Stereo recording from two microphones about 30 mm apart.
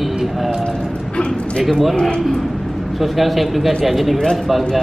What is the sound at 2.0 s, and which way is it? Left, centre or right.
Speech, left.